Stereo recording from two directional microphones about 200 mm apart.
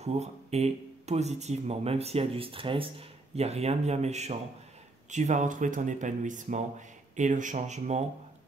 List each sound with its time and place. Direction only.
0.0 s speech: 30° right (ahead or behind)